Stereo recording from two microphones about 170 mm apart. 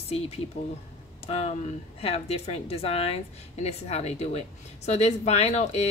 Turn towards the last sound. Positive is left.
turn(degrees=40)  # may be behind; listen again after turning